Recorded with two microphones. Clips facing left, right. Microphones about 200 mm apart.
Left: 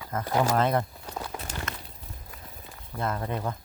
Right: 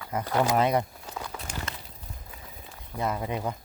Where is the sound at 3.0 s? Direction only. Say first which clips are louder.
Right 1 dB; 10° right (ahead or behind).